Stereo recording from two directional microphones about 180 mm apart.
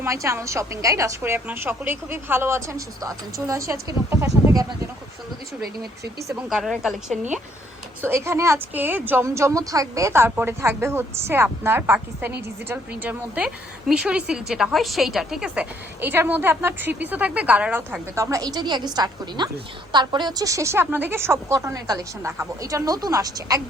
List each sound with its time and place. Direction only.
0.0 s a woman's voice: 15° right (ahead or behind)
6.5 s a woman's voice: centre (ahead or behind)
7.1 s speech: 40° right (ahead or behind)
8.0 s a woman's voice: 15° right (ahead or behind)